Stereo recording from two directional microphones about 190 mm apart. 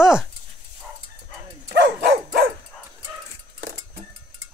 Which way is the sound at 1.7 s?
60° right (ahead or behind).